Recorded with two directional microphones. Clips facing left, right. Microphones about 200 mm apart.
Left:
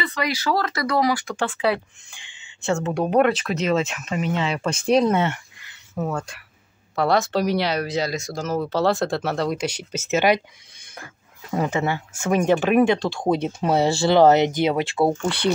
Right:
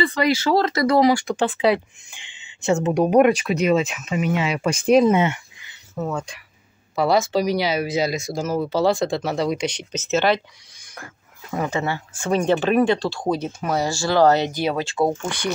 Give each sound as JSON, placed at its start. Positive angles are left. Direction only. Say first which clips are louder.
{"t": 0.0, "sound": "speech", "louder": "right 6 dB", "side_deg": -30}
{"t": 6.1, "sound": "speech", "louder": "right 1 dB", "side_deg": 5}
{"t": 11.5, "sound": "speech", "louder": "left 1 dB", "side_deg": 20}
{"t": 13.3, "sound": "speech", "louder": "left 3 dB", "side_deg": 25}